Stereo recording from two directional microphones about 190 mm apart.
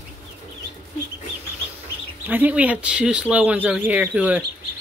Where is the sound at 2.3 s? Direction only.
10° right (ahead or behind).